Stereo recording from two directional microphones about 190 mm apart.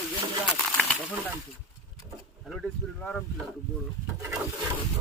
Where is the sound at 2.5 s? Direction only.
Centre (ahead or behind).